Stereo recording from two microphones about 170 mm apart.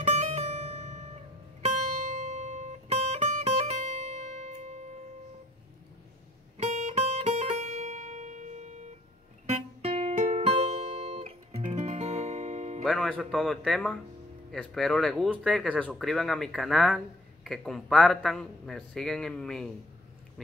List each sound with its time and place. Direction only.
0.0 s music: 40° right (ahead or behind)
6.6 s music: 40° right (ahead or behind)
12.8 s speech: centre (ahead or behind)